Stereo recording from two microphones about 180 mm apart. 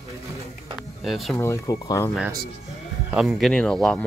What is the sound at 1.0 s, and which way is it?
Speech, centre (ahead or behind).